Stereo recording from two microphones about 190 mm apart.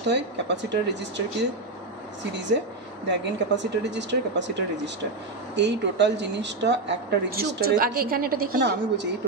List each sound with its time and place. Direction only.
0.1 s speech: 65° right (ahead or behind)
3.1 s speech: 65° right (ahead or behind)